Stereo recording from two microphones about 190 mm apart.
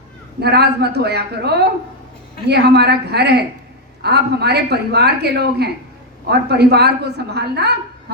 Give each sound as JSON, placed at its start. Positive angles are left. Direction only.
{"t": 0.3, "sound": "a woman's voice", "side_deg": -60}